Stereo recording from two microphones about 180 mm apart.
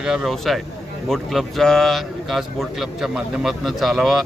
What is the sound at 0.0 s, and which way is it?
Speech, 5° right (ahead or behind).